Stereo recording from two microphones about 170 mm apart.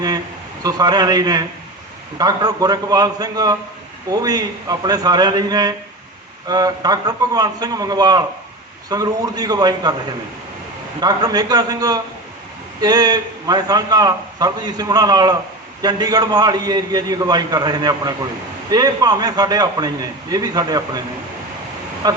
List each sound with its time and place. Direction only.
0.6 s a man's voice: 20° right (ahead or behind)
11.0 s a man's voice: 25° right (ahead or behind)
22.0 s speech: 25° right (ahead or behind)